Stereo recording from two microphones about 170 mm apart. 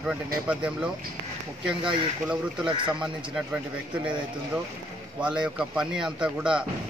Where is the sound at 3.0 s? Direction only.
5° right (ahead or behind).